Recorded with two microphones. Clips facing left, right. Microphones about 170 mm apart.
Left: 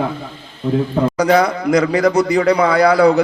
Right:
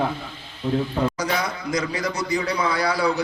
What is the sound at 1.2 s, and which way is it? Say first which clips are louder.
A man's voice: left 12 dB; 60° left (ahead or behind).